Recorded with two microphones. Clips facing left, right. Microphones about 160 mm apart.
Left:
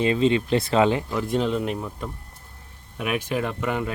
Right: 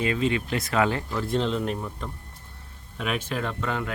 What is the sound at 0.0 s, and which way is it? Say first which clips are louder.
Speech: left 5 dB; 25° left (ahead or behind).